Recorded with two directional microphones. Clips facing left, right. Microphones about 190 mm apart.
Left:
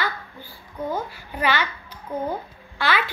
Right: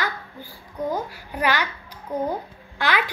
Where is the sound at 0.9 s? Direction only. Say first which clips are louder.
Right 1 dB; 10° right (ahead or behind).